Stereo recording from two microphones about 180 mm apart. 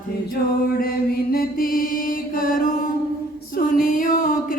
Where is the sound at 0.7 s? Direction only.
55° left (ahead or behind).